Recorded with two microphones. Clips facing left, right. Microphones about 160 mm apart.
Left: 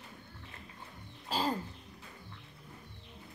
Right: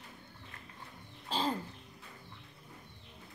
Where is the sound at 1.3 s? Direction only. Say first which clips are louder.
Left 1 dB; 10° left (ahead or behind).